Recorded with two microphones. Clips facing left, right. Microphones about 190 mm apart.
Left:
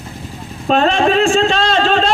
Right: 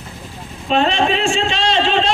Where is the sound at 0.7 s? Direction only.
45° left (ahead or behind).